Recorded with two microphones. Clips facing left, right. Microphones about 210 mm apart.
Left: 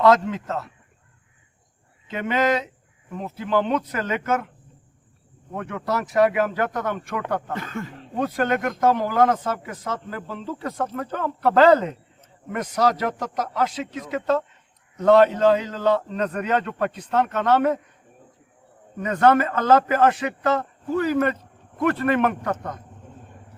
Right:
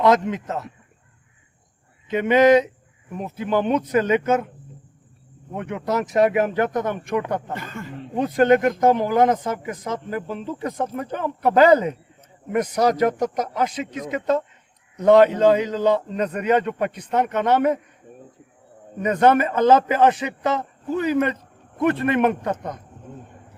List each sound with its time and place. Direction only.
0.0 s speech: 20° right (ahead or behind)
2.0 s a man's voice: 20° right (ahead or behind)
5.5 s a man's voice: 20° right (ahead or behind)
7.5 s speech: centre (ahead or behind)
8.2 s speech: 20° right (ahead or behind)
18.9 s a man's voice: 20° right (ahead or behind)